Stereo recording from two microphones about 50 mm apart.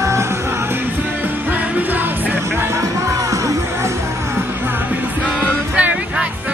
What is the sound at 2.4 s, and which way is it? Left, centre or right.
Music, right.